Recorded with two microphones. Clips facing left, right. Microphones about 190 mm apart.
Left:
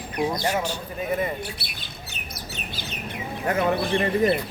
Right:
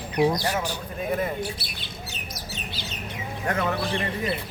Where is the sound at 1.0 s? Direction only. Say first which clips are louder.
Left 1 dB; centre (ahead or behind).